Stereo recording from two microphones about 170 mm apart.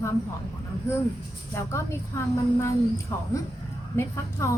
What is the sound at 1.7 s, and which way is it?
A woman's voice, 15° left (ahead or behind).